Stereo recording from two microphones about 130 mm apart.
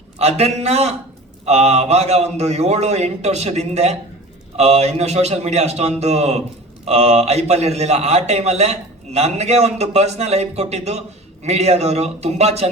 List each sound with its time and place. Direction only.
0.2 s a man's voice: 55° right (ahead or behind)